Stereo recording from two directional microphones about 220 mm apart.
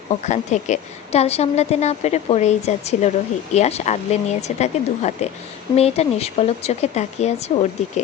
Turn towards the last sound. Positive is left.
turn(degrees=30)  # may be behind; listen again after turning